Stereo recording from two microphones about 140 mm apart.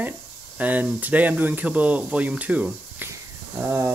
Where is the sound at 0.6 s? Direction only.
10° right (ahead or behind).